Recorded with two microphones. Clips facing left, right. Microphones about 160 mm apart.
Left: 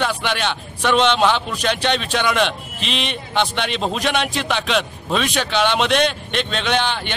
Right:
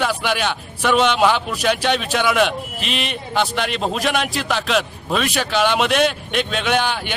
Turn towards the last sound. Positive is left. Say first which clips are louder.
# right 1 dB
turn(degrees=-5)  # may be behind; listen again after turning